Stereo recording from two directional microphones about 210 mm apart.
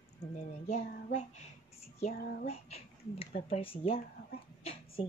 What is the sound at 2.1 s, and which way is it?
Speech, 45° left (ahead or behind).